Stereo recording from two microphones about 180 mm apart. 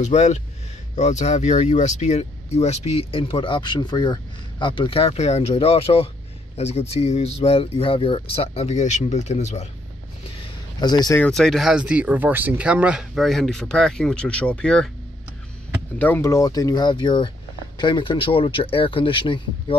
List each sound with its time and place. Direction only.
0.0 s speech: 40° left (ahead or behind)
10.8 s speech: 25° left (ahead or behind)
11.1 s speech: 5° left (ahead or behind)
16.0 s speech: 10° left (ahead or behind); by 19.8 s 30° left (ahead or behind)